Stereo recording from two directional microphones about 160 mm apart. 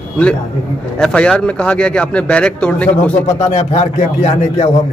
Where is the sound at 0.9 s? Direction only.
5° left (ahead or behind).